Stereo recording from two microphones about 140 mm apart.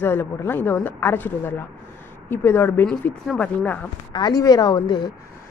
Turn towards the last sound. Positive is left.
turn(degrees=30)  # may be behind; listen again after turning